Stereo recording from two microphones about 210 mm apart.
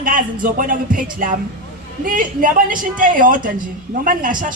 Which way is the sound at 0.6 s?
40° right (ahead or behind).